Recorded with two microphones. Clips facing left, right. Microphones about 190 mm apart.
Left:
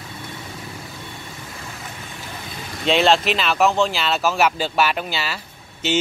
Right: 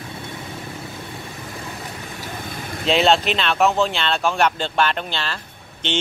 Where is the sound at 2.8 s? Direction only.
Centre (ahead or behind).